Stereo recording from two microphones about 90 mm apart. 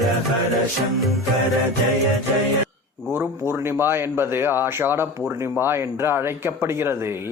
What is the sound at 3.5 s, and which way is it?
Speech, 25° right (ahead or behind).